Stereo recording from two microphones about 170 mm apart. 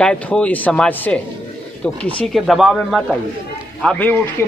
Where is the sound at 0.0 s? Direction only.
5° left (ahead or behind).